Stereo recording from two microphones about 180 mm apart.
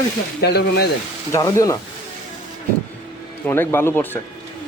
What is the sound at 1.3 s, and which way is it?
Speech, 15° left (ahead or behind).